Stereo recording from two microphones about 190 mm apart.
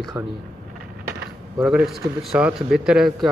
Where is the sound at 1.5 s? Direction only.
Centre (ahead or behind).